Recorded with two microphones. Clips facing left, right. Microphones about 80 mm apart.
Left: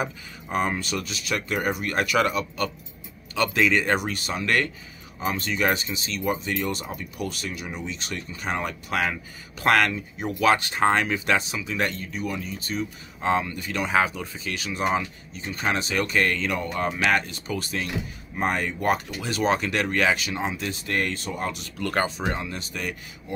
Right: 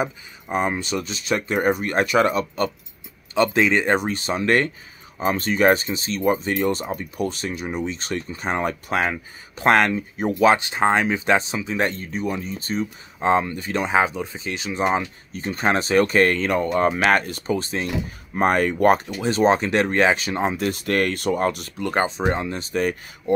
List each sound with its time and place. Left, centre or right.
0.0 s speech: right
17.5 s speech: right
18.3 s speech: right
19.2 s speech: right
20.3 s speech: right
21.7 s speech: right